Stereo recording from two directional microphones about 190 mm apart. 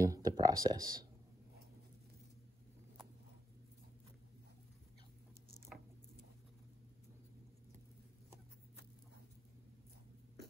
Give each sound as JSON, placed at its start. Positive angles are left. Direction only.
{"t": 0.0, "sound": "speech", "side_deg": -20}